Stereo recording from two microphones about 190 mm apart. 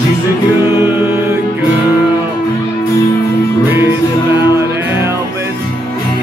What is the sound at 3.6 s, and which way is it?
Music, 10° right (ahead or behind).